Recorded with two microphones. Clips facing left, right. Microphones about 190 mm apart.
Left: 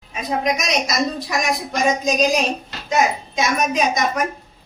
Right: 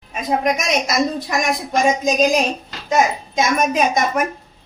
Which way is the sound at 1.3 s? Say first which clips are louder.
Right 2 dB; 50° right (ahead or behind).